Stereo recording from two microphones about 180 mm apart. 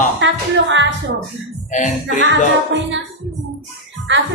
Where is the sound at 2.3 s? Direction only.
90° right.